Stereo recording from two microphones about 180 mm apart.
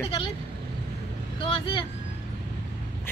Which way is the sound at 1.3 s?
30° left (ahead or behind).